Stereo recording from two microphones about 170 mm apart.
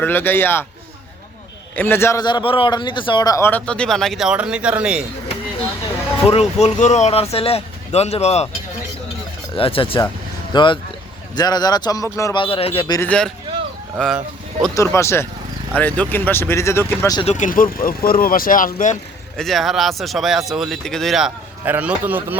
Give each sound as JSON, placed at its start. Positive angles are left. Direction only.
{"t": 0.0, "sound": "speech", "side_deg": 10}
{"t": 1.7, "sound": "speech", "side_deg": 10}
{"t": 2.2, "sound": "speech", "side_deg": 30}
{"t": 6.2, "sound": "speech", "side_deg": 35}
{"t": 9.6, "sound": "speech", "side_deg": 30}
{"t": 12.4, "sound": "speech", "side_deg": 35}
{"t": 13.1, "sound": "speech", "side_deg": 5}
{"t": 14.8, "sound": "speech", "side_deg": 15}
{"t": 17.3, "sound": "speech", "side_deg": 50}
{"t": 19.4, "sound": "speech", "side_deg": 0}